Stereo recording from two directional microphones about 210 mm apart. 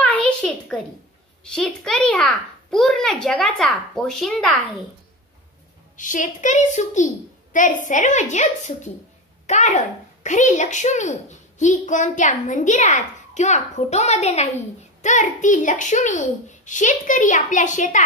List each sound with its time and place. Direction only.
0.0 s a sound: 5° left (ahead or behind)
1.4 s a child's voice: 5° left (ahead or behind)
5.9 s a child's voice: 35° left (ahead or behind)